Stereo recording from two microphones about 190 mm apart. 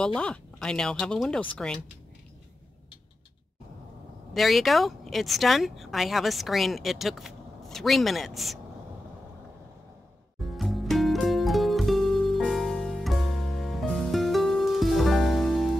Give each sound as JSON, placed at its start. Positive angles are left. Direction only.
{"t": 0.0, "sound": "speech", "side_deg": 5}
{"t": 4.3, "sound": "speech", "side_deg": 0}
{"t": 10.4, "sound": "music", "side_deg": 0}